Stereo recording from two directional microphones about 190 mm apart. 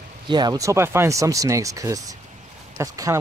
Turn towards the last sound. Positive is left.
turn(degrees=-20)  # may be behind; listen again after turning